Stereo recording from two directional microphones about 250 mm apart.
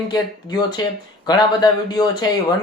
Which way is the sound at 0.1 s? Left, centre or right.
Centre.